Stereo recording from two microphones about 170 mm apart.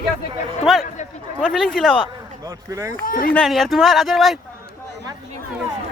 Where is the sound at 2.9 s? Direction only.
55° left (ahead or behind).